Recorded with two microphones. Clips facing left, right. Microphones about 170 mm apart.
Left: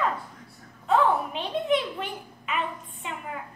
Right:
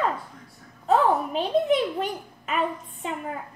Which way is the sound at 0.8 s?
40° right (ahead or behind).